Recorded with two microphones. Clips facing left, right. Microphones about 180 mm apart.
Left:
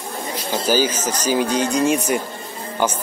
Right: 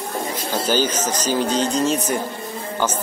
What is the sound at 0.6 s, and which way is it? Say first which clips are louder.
Speech: left 2 dB; 10° left (ahead or behind).